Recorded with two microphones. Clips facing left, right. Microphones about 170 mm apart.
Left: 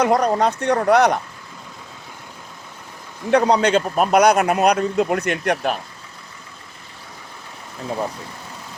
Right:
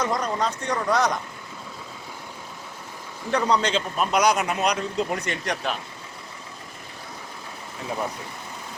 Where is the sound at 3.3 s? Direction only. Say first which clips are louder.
Left 7 dB; 65° left (ahead or behind).